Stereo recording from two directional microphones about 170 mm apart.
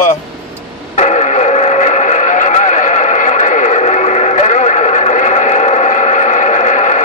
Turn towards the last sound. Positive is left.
turn(degrees=45)  # may be behind; listen again after turning